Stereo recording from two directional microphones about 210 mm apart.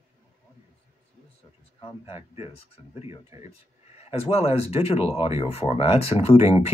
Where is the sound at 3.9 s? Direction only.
30° left (ahead or behind).